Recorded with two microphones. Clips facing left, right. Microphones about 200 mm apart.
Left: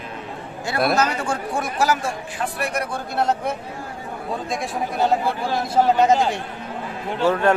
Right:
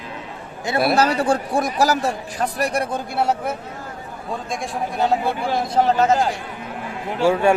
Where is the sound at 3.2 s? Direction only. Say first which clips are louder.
Even; 10° right (ahead or behind).